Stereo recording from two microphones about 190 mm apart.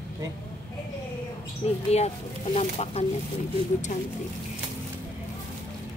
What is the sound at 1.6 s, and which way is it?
Speech, 35° left (ahead or behind).